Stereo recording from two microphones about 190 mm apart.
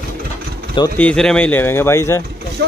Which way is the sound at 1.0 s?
5° left (ahead or behind).